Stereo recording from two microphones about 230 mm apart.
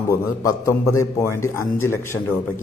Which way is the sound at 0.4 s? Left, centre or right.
Centre.